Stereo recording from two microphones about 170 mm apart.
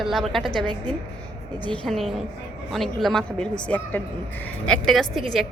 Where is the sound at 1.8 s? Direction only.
Centre (ahead or behind).